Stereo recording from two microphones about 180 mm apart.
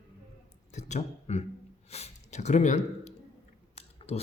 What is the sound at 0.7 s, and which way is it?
A man's voice, 40° left (ahead or behind).